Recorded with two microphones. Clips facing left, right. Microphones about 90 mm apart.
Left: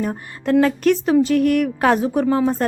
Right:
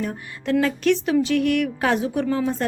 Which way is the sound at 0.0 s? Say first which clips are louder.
Left 4 dB; 40° left (ahead or behind).